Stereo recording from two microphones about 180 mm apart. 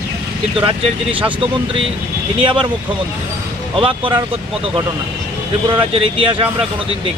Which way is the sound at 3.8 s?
30° right (ahead or behind).